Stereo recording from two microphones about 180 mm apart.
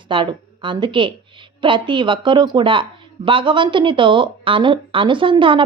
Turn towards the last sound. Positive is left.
turn(degrees=-30)  # may be behind; listen again after turning